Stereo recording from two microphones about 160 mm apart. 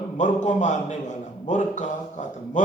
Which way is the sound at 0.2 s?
50° left (ahead or behind).